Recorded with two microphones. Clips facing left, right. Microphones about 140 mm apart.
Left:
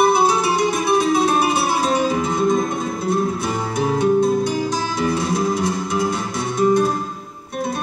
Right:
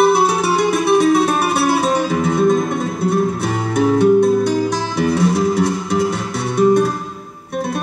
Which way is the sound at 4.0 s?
65° right (ahead or behind).